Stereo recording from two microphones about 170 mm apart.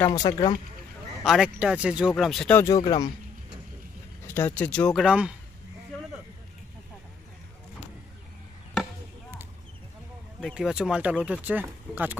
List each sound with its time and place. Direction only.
0.0 s speech: 20° left (ahead or behind)
1.2 s speech: centre (ahead or behind)
2.6 s speech: 20° left (ahead or behind)
4.3 s speech: 10° left (ahead or behind); by 5.3 s 5° right (ahead or behind)
10.4 s speech: 5° right (ahead or behind)